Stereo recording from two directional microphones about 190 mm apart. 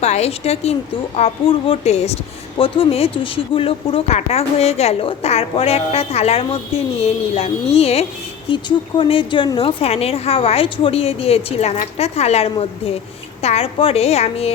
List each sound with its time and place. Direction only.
0.0 s speech: 35° left (ahead or behind)